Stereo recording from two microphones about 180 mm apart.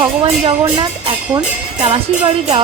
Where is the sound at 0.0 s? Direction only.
30° right (ahead or behind).